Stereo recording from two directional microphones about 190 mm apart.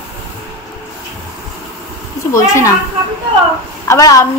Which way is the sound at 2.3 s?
15° left (ahead or behind).